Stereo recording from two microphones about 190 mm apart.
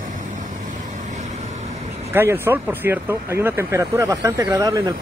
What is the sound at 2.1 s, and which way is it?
Speech, 10° right (ahead or behind).